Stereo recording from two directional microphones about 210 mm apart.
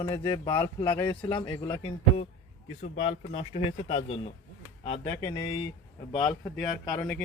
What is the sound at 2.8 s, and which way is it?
Speech, 35° left (ahead or behind).